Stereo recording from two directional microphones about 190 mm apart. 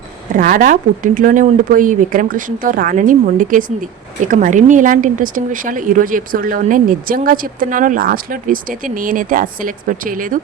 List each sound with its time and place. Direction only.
0.3 s speech: 45° right (ahead or behind)